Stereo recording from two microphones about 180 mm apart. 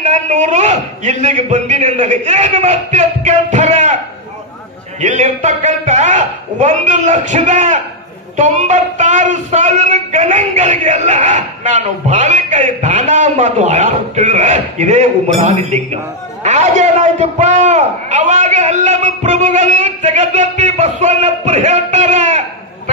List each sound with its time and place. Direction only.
0.0 s speech: 40° right (ahead or behind)
5.0 s speech: 40° right (ahead or behind)